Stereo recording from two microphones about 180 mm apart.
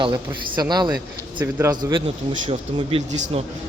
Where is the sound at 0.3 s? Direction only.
20° right (ahead or behind); by 3.4 s 40° right (ahead or behind).